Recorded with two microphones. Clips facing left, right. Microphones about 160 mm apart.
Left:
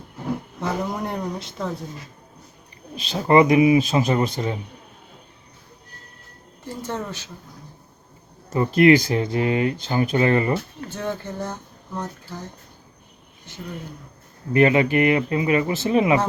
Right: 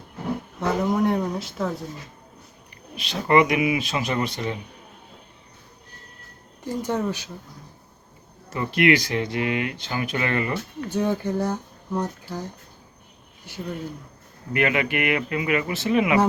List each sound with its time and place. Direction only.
0.6 s a sound: centre (ahead or behind)
3.1 s speech: 30° left (ahead or behind)
6.8 s speech: 15° right (ahead or behind)
8.5 s speech: 30° left (ahead or behind)
10.8 s speech: 10° right (ahead or behind)
13.5 s speech: 10° right (ahead or behind)
14.5 s speech: 30° left (ahead or behind)